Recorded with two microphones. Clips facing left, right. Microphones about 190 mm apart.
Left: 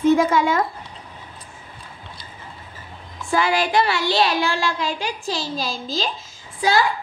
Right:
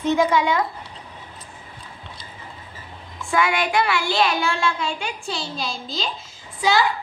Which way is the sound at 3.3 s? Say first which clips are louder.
Left 1 dB; 30° left (ahead or behind).